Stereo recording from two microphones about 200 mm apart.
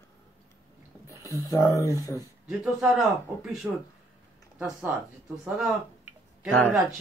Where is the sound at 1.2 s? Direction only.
15° left (ahead or behind).